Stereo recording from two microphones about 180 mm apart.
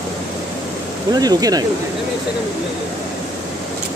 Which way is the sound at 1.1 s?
20° right (ahead or behind).